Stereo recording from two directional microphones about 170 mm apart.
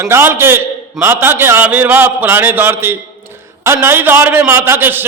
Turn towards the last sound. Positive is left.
turn(degrees=-10)  # may be behind; listen again after turning